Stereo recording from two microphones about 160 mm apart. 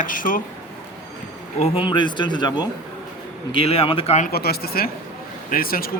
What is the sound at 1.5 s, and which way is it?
Speech, 35° left (ahead or behind).